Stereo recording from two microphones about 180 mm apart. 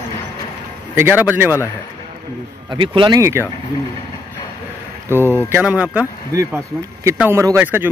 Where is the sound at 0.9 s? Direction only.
10° right (ahead or behind).